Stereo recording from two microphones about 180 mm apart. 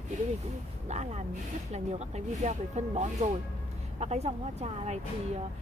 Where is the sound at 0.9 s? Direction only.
40° right (ahead or behind).